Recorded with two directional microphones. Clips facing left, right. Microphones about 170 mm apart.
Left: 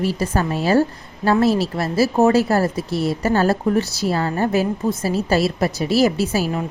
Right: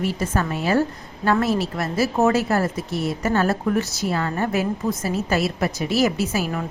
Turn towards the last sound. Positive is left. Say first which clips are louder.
# left 3 dB
turn(degrees=30)  # may be behind; listen again after turning